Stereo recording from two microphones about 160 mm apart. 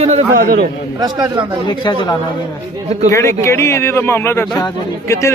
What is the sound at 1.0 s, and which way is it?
Speech, 25° right (ahead or behind).